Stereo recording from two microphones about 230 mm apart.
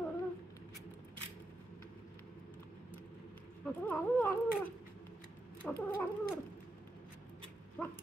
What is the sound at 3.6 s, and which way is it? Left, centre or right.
Speech, centre.